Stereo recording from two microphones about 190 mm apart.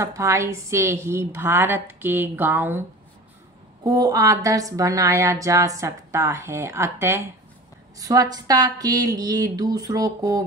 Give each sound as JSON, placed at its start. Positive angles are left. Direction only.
{"t": 0.0, "sound": "a woman's voice", "side_deg": -15}
{"t": 3.8, "sound": "a woman's voice", "side_deg": -20}